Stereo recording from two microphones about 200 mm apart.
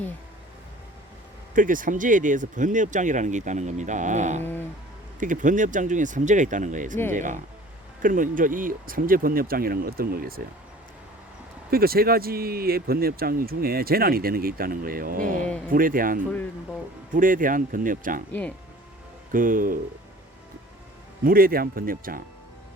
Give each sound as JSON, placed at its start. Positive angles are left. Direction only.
{"t": 1.5, "sound": "speech", "side_deg": -40}
{"t": 11.7, "sound": "speech", "side_deg": -50}
{"t": 19.3, "sound": "speech", "side_deg": -45}
{"t": 21.2, "sound": "speech", "side_deg": -45}